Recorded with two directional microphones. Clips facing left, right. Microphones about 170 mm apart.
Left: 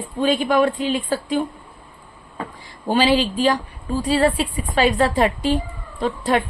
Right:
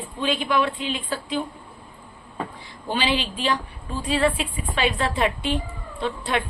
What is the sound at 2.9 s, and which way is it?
A woman's voice, 45° left (ahead or behind).